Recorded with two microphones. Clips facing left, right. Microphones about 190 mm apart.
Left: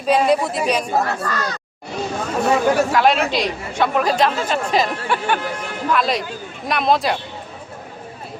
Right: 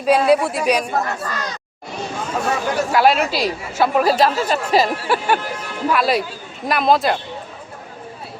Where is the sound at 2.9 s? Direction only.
5° right (ahead or behind).